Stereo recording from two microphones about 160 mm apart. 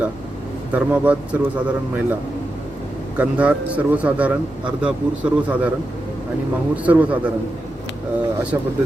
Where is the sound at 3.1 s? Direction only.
10° right (ahead or behind).